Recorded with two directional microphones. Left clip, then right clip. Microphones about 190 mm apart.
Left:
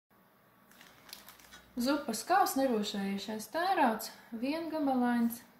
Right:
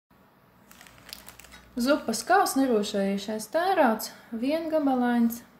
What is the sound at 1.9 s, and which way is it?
Speech, 50° right (ahead or behind).